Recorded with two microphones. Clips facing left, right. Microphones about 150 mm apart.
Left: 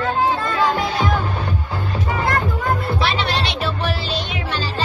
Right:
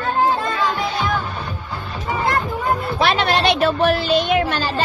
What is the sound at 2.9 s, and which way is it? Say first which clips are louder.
Music: right 3 dB; 50° right (ahead or behind).